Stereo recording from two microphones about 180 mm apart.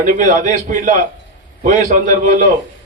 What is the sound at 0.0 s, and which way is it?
A man's voice, 45° right (ahead or behind).